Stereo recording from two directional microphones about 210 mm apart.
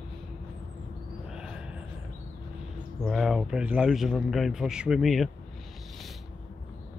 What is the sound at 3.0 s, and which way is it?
A man's voice, centre (ahead or behind).